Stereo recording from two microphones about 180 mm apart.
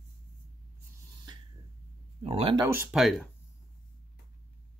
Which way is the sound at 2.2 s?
30° right (ahead or behind).